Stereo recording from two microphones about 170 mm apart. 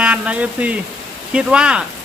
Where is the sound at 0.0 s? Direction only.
5° right (ahead or behind).